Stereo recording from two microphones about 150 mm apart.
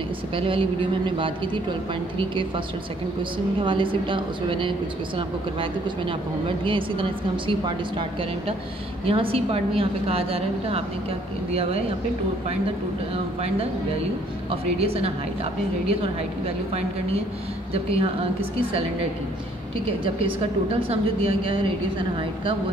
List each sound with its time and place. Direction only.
0.4 s a woman's voice: 35° right (ahead or behind)
9.0 s a woman's voice: 40° right (ahead or behind)
13.1 s a woman's voice: 40° right (ahead or behind)
14.8 s a woman's voice: 40° right (ahead or behind)
17.9 s a woman's voice: 40° right (ahead or behind)
20.2 s a woman's voice: 40° right (ahead or behind)